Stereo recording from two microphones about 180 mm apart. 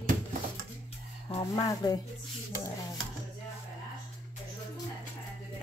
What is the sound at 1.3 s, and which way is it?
Speech, 20° left (ahead or behind).